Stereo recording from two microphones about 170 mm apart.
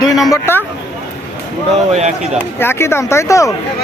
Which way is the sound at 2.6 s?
15° left (ahead or behind).